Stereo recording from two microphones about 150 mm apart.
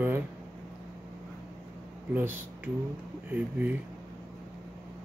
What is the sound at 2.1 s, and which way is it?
Speech, 10° right (ahead or behind).